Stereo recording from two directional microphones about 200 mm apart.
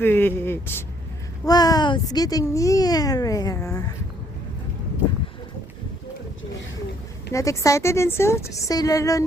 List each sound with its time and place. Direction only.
0.0 s a woman's voice: 10° left (ahead or behind)
7.3 s a woman's voice: 15° left (ahead or behind)